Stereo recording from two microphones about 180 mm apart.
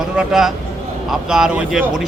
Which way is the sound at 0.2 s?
Centre (ahead or behind).